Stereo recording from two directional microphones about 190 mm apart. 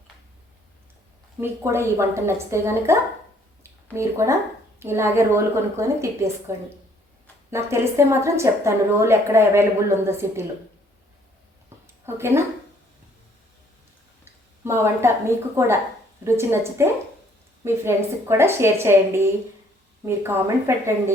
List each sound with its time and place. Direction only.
1.4 s a woman's voice: 15° right (ahead or behind)
11.7 s a sound: 10° right (ahead or behind)
12.0 s a woman's voice: 15° right (ahead or behind)
14.6 s a woman's voice: 15° right (ahead or behind)